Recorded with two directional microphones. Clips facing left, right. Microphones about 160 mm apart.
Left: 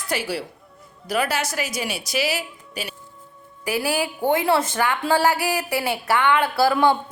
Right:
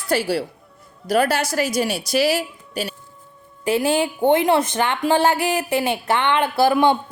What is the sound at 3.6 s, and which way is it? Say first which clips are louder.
A woman's voice: right 5 dB; 25° right (ahead or behind).